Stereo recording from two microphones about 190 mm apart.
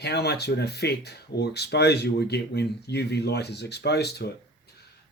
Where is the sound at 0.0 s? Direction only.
60° left (ahead or behind).